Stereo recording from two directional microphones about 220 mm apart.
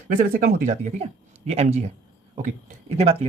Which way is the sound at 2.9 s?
25° right (ahead or behind).